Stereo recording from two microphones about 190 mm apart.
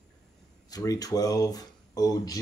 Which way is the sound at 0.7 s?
20° left (ahead or behind).